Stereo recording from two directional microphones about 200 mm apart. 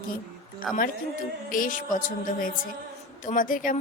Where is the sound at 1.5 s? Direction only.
45° left (ahead or behind).